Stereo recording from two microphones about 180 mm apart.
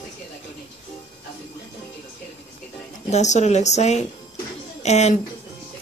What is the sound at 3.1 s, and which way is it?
A woman's voice, 40° left (ahead or behind).